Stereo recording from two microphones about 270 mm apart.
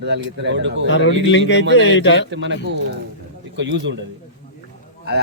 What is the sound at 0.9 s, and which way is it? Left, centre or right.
A man's voice, left.